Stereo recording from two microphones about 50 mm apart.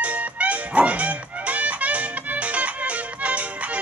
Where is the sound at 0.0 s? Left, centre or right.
Right.